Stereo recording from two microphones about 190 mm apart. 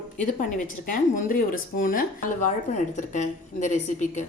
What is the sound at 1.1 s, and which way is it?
A woman's voice, 45° left (ahead or behind).